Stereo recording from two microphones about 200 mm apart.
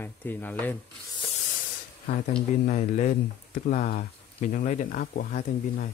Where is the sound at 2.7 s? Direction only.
40° left (ahead or behind).